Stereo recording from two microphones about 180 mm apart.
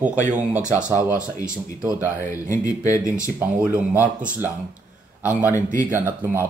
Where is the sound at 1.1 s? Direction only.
45° right (ahead or behind).